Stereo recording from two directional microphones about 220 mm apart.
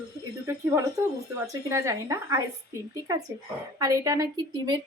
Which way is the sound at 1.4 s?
15° right (ahead or behind).